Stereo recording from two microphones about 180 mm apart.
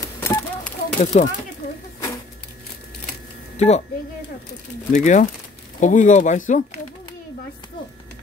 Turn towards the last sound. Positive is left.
turn(degrees=45)  # may be behind; listen again after turning